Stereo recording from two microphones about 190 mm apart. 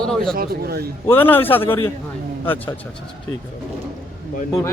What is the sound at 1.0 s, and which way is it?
Speech, 10° left (ahead or behind).